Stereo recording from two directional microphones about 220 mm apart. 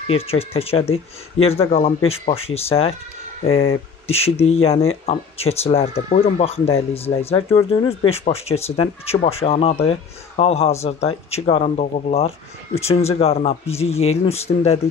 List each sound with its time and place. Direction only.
0.0 s speech: 25° left (ahead or behind)
4.1 s speech: 30° left (ahead or behind)